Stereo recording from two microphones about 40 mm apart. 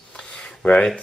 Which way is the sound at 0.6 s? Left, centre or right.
Left.